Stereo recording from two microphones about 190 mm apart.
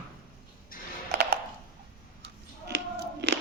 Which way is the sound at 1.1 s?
60° right (ahead or behind).